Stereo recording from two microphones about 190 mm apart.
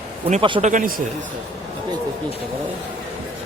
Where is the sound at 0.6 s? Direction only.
45° right (ahead or behind).